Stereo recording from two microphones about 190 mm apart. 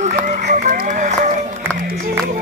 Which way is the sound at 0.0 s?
40° right (ahead or behind).